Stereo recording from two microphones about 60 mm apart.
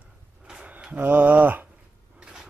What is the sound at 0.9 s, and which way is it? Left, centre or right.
Speech, right.